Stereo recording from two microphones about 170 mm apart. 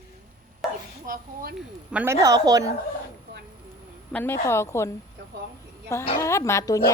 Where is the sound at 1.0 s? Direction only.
60° right (ahead or behind).